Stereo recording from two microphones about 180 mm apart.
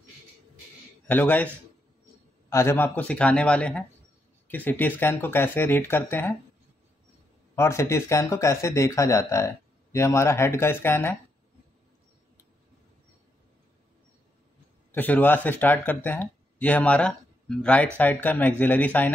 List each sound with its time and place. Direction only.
1.0 s speech: 10° left (ahead or behind)
2.5 s speech: 15° left (ahead or behind)
7.5 s speech: 15° left (ahead or behind)
14.9 s speech: 10° left (ahead or behind)